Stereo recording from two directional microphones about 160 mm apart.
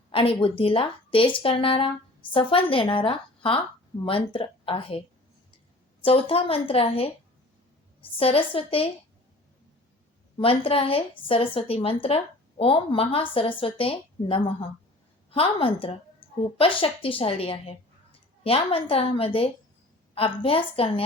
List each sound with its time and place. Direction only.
0.1 s a woman's voice: 35° left (ahead or behind)
6.1 s a woman's voice: 35° left (ahead or behind)
8.2 s a woman's voice: 35° left (ahead or behind)
10.3 s a woman's voice: 35° left (ahead or behind)